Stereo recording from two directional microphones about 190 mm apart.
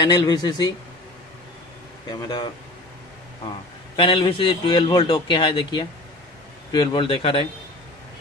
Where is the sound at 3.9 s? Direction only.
25° left (ahead or behind).